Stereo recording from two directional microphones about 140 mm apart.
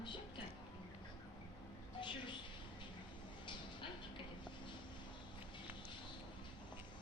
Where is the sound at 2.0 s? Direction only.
35° left (ahead or behind).